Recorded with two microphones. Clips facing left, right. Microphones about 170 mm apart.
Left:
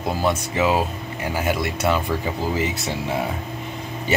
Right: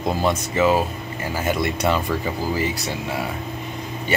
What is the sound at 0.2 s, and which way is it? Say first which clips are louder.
Speech: right 1 dB; 10° left (ahead or behind).